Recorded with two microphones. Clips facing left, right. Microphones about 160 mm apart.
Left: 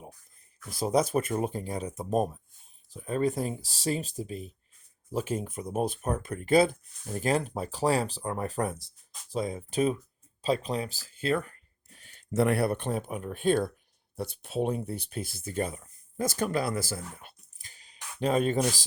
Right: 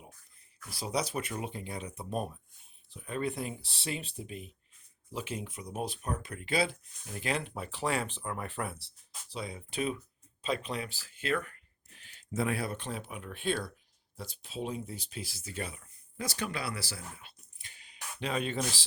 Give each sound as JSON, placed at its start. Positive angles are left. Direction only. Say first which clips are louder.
{"t": 0.7, "sound": "speech", "louder": "left 8 dB", "side_deg": 45}
{"t": 10.4, "sound": "a sound", "louder": "left 6 dB", "side_deg": 35}
{"t": 12.3, "sound": "speech", "louder": "left 8 dB", "side_deg": 70}
{"t": 14.2, "sound": "speech", "louder": "left 9 dB", "side_deg": 60}